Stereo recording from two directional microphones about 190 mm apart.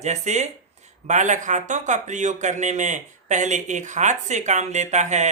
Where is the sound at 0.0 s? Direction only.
35° right (ahead or behind).